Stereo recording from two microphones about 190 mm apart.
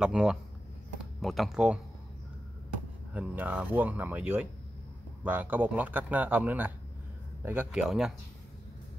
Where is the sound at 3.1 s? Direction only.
10° right (ahead or behind).